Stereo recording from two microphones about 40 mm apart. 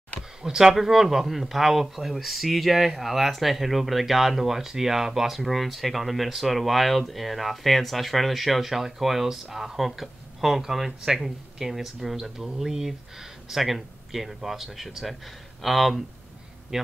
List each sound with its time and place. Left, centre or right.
0.4 s speech: centre
16.7 s a man's voice: centre